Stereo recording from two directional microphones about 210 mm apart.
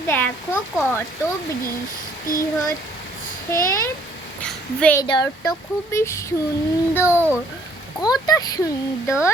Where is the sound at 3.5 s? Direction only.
15° left (ahead or behind).